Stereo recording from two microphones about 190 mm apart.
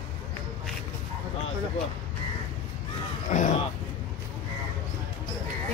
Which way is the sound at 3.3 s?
40° left (ahead or behind).